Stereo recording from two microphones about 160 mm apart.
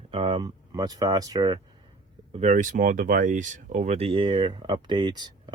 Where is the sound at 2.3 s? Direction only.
45° right (ahead or behind).